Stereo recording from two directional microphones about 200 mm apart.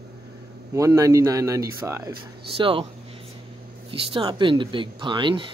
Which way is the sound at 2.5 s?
25° right (ahead or behind).